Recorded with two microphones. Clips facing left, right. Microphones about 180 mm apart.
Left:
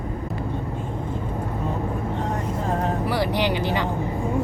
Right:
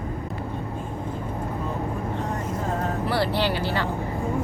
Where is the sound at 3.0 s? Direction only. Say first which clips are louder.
Left 1 dB; 15° left (ahead or behind).